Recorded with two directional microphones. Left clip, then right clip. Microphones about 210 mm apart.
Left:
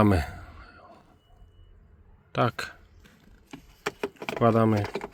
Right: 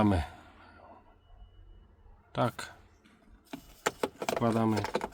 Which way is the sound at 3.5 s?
Centre (ahead or behind).